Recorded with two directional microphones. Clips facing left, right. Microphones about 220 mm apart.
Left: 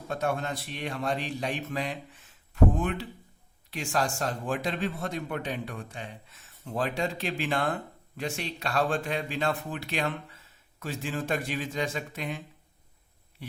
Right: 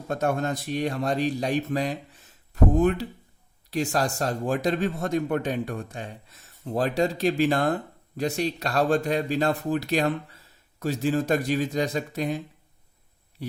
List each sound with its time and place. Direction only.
0.1 s speech: 45° right (ahead or behind)